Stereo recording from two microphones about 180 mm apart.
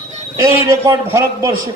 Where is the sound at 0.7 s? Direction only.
15° right (ahead or behind).